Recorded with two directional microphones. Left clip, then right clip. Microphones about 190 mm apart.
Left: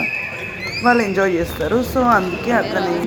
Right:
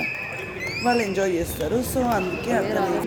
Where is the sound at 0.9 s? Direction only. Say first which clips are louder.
Left 7 dB; 10° left (ahead or behind).